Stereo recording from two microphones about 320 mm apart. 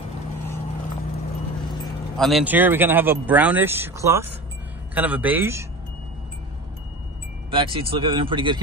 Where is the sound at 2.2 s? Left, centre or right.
Centre.